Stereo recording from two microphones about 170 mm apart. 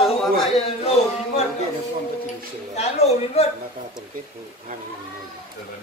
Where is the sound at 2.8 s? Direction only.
40° left (ahead or behind).